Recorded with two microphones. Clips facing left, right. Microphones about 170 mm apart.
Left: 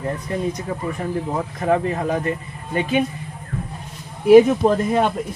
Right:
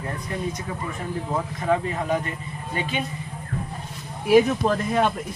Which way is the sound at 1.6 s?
45° left (ahead or behind).